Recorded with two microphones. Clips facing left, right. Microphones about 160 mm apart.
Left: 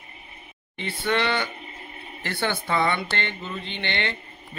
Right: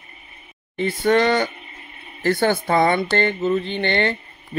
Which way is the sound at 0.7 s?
45° right (ahead or behind).